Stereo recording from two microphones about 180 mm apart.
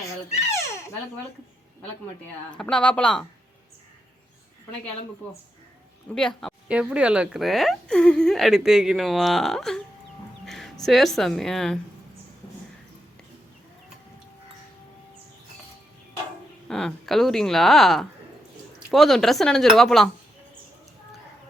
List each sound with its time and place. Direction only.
0.5 s a sound: 15° left (ahead or behind)
2.2 s speech: 5° left (ahead or behind)
6.1 s speech: centre (ahead or behind)
16.6 s speech: 5° left (ahead or behind)